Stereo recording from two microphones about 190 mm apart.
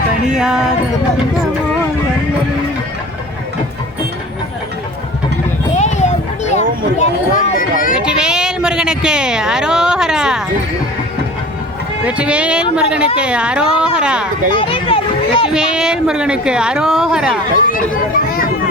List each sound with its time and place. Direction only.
0.3 s speech: 5° right (ahead or behind)
5.7 s a sound: 35° left (ahead or behind)
7.9 s speech: 5° right (ahead or behind)
12.0 s speech: 5° right (ahead or behind)
14.5 s a sound: 25° left (ahead or behind)
15.4 s speech: 5° right (ahead or behind)
17.7 s speech: 50° left (ahead or behind)